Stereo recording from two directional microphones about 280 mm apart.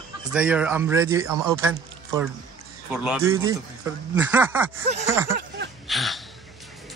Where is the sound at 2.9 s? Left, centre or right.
Centre.